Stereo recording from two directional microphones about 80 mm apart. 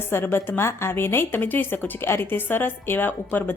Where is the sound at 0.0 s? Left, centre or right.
Left.